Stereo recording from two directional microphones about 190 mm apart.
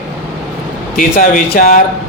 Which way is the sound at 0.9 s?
45° left (ahead or behind).